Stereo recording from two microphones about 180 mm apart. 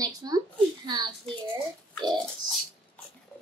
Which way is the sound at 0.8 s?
25° right (ahead or behind).